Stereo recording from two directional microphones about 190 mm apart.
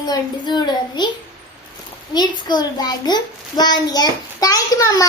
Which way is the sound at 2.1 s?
20° left (ahead or behind).